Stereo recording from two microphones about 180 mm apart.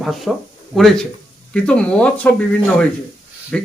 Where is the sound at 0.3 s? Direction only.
Centre (ahead or behind).